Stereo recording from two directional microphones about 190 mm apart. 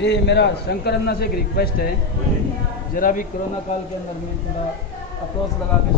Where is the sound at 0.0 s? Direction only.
65° left (ahead or behind); by 3.3 s 45° left (ahead or behind).